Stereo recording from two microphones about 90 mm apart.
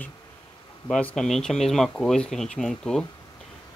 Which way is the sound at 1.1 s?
5° left (ahead or behind).